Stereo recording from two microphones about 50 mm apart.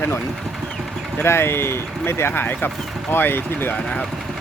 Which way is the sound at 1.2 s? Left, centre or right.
Left.